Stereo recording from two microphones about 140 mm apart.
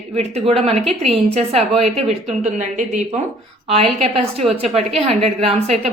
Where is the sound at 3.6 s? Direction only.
45° right (ahead or behind).